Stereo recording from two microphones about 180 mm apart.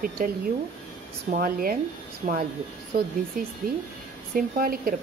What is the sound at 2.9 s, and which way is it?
Speech, 55° right (ahead or behind).